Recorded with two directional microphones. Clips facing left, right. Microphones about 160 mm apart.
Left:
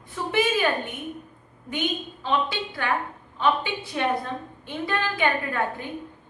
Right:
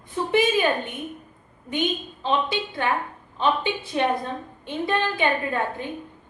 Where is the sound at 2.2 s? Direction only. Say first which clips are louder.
Right 2 dB; 20° right (ahead or behind).